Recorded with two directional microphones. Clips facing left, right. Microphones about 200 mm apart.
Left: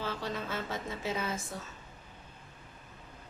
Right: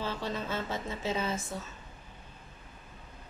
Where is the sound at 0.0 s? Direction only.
25° right (ahead or behind).